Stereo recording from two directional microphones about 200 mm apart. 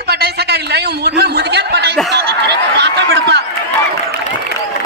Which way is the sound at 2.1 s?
55° right (ahead or behind).